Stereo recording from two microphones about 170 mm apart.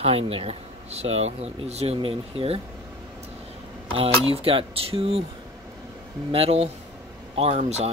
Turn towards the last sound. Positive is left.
turn(degrees=-40)  # may be behind; listen again after turning